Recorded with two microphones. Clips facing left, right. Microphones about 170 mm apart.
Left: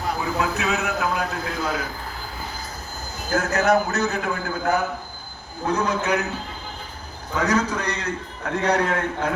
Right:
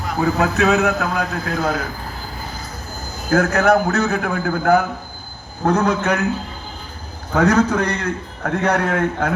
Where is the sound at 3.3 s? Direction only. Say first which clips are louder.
Right 5 dB; 55° right (ahead or behind).